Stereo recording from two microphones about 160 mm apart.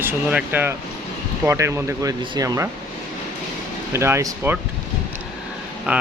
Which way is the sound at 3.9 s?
15° right (ahead or behind).